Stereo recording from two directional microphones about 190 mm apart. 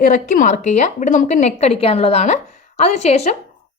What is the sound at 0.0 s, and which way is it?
Speech, 45° left (ahead or behind).